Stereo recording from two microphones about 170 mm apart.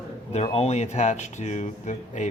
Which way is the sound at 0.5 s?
40° left (ahead or behind).